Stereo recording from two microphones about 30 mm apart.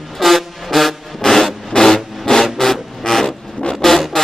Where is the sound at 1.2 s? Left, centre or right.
Centre.